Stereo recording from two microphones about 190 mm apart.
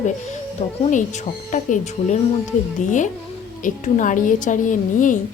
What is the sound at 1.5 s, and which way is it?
Speech, 40° left (ahead or behind).